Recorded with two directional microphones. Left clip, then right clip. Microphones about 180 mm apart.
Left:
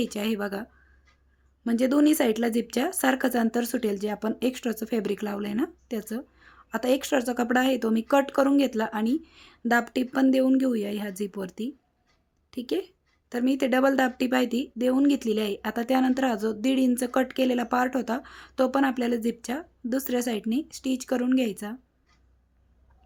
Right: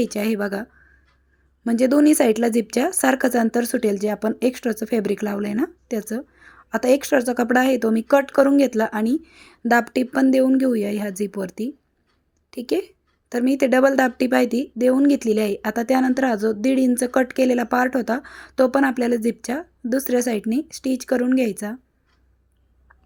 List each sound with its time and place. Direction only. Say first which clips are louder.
0.0 s a woman's voice: right 6 dB; 20° right (ahead or behind)